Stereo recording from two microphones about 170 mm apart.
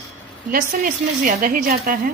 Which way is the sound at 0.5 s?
55° right (ahead or behind).